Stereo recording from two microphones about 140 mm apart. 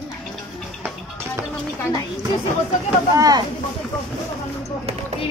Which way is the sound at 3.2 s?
25° right (ahead or behind).